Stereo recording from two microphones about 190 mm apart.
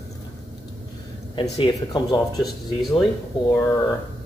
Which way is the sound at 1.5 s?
25° left (ahead or behind).